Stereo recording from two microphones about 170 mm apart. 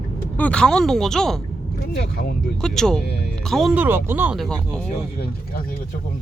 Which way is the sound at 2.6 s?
5° left (ahead or behind).